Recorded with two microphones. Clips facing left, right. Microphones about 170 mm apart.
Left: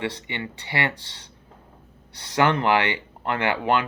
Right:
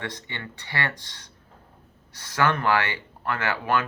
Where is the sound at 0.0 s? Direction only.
15° left (ahead or behind).